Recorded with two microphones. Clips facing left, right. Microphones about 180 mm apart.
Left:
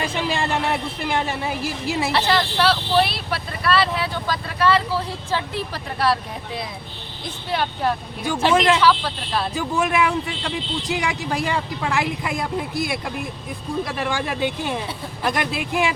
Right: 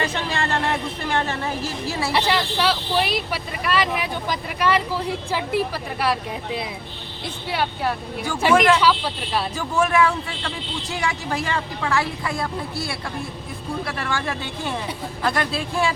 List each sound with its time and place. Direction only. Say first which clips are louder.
0.0 s a woman's voice: left 1 dB; 10° left (ahead or behind)
2.1 s speech: even; 10° right (ahead or behind)
7.5 s speech: left 2 dB; 10° right (ahead or behind)
9.6 s a woman's voice: right 2 dB; 15° left (ahead or behind)